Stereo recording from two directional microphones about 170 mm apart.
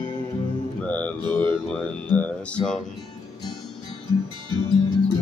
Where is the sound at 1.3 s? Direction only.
10° left (ahead or behind).